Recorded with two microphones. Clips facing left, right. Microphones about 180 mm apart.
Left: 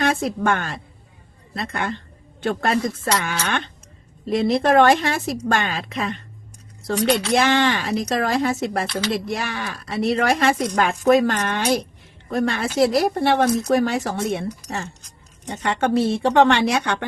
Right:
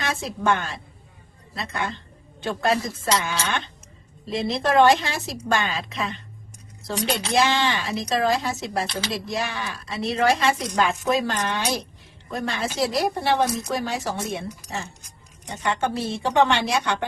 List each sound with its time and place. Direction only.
0.0 s speech: 55° left (ahead or behind)